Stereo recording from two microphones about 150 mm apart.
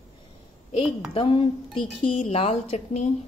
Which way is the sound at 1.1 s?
40° left (ahead or behind).